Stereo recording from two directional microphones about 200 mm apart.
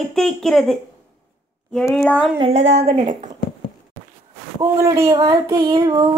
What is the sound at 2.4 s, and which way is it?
Speech, 30° right (ahead or behind).